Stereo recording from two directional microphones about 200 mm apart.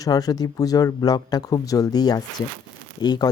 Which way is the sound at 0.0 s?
20° left (ahead or behind).